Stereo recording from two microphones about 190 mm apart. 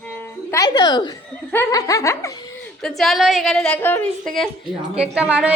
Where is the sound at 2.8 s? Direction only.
Centre (ahead or behind).